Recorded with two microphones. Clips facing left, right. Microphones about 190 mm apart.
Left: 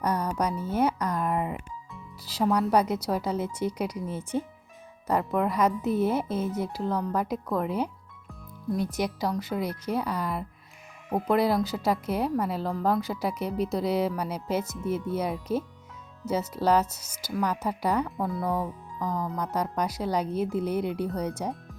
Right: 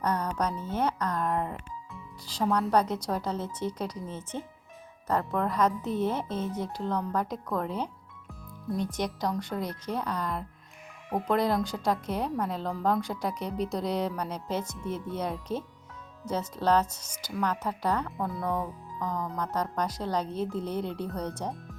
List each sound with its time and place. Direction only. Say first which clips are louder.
0.0 s a woman's voice: left 2 dB; 10° left (ahead or behind)